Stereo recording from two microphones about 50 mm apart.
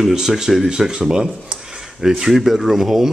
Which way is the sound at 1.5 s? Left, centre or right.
Centre.